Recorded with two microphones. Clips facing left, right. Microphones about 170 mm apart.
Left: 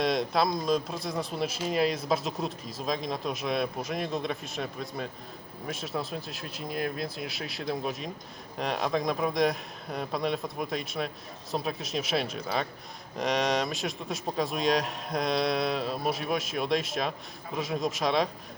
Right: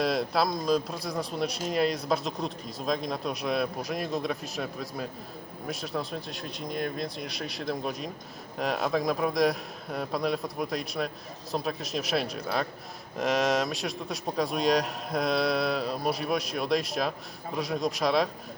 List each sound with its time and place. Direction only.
0.0 s speech: centre (ahead or behind)